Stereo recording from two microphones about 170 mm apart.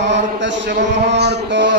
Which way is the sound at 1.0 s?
80° right.